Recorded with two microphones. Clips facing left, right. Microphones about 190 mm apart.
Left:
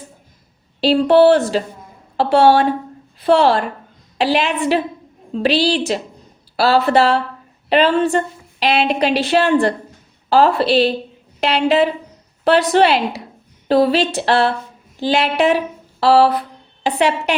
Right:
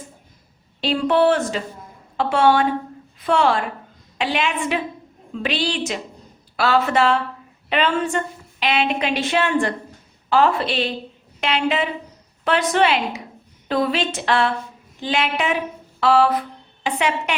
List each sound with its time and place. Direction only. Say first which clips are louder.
0.8 s a woman's voice: left 7 dB; 35° left (ahead or behind)
15.0 s a sound: left 7 dB; 35° left (ahead or behind)
16.8 s a woman's voice: left 5 dB; 35° left (ahead or behind)